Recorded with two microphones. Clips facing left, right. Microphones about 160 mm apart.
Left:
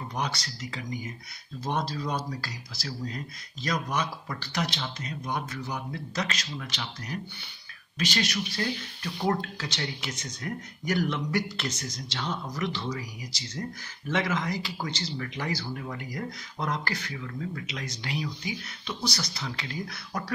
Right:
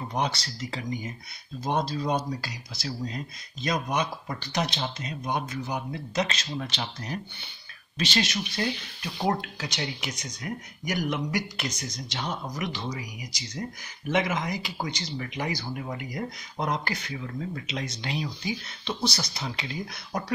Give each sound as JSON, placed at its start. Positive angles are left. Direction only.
{"t": 0.1, "sound": "speech", "side_deg": -25}